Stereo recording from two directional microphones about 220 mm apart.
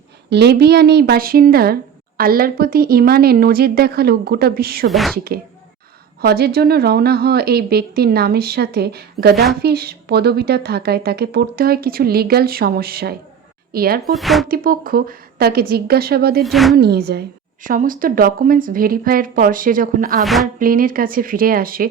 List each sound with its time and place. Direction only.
0.3 s speech: 50° right (ahead or behind)
4.9 s speech: centre (ahead or behind)
5.1 s speech: 45° right (ahead or behind)
14.1 s speech: centre (ahead or behind)
14.4 s a woman's voice: 40° right (ahead or behind)
16.4 s speech: centre (ahead or behind)
16.7 s a woman's voice: 45° right (ahead or behind)
20.2 s speech: centre (ahead or behind)
20.6 s a woman's voice: 40° right (ahead or behind)